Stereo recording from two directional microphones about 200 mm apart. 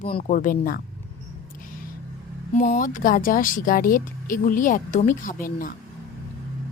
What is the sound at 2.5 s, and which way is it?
Speech, 45° left (ahead or behind).